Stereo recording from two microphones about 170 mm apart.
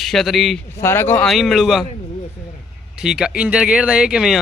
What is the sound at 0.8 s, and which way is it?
Speech, 15° left (ahead or behind).